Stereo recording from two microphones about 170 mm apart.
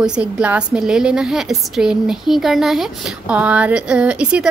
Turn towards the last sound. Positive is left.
turn(degrees=-5)  # may be behind; listen again after turning